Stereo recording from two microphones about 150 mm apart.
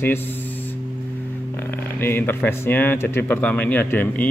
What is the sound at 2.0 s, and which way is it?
Speech, 15° left (ahead or behind).